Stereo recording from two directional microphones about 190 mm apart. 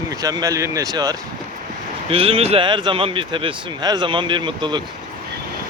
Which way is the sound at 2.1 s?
30° right (ahead or behind).